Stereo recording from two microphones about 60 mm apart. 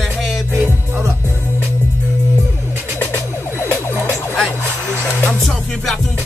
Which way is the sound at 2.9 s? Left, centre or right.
Left.